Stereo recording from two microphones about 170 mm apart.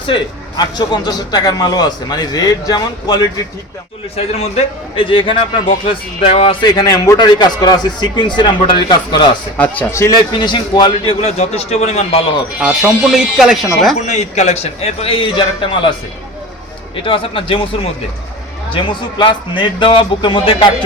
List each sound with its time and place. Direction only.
0.1 s a man's voice: 25° left (ahead or behind)
4.1 s a man's voice: 35° left (ahead or behind)
9.6 s a man's voice: 15° left (ahead or behind)
10.5 s a man's voice: 25° left (ahead or behind)
12.5 s speech: 5° right (ahead or behind)
14.0 s a man's voice: 45° left (ahead or behind)
16.9 s a man's voice: 30° left (ahead or behind)